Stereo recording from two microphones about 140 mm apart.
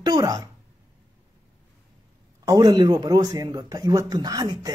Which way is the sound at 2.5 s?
25° right (ahead or behind).